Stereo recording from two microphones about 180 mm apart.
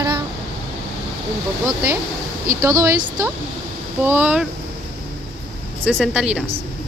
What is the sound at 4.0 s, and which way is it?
Speech, 10° right (ahead or behind).